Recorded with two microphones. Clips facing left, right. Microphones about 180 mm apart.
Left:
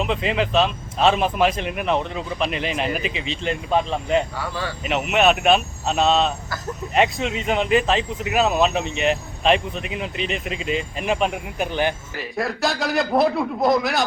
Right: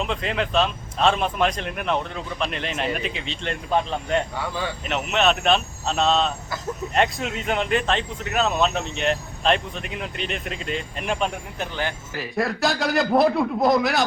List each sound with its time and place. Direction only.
0.0 s speech: centre (ahead or behind)
11.6 s speech: 15° left (ahead or behind)
12.1 s speech: centre (ahead or behind)